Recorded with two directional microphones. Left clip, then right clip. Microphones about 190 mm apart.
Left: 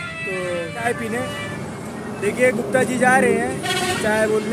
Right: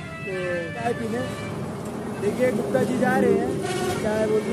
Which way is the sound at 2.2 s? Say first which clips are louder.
Left 5 dB; 15° left (ahead or behind).